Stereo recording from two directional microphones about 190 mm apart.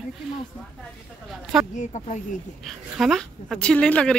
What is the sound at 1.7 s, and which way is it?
Speech, 40° left (ahead or behind).